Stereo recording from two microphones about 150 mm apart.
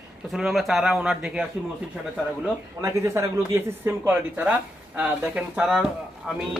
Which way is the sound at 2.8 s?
20° right (ahead or behind).